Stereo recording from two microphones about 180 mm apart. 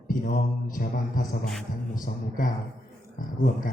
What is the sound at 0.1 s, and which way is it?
Speech, 50° left (ahead or behind).